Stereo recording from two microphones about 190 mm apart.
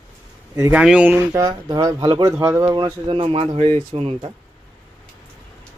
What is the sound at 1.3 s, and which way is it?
Speech, 20° right (ahead or behind).